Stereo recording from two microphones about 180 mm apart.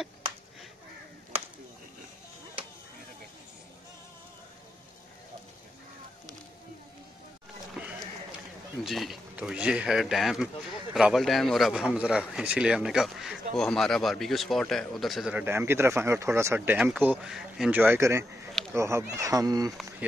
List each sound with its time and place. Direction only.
7.7 s a sound: 5° right (ahead or behind)
8.8 s speech: centre (ahead or behind); by 19.7 s 20° right (ahead or behind)
20.0 s speech: 10° right (ahead or behind)